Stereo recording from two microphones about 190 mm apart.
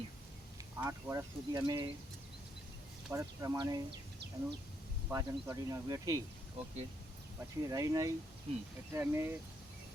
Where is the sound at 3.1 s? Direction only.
15° right (ahead or behind).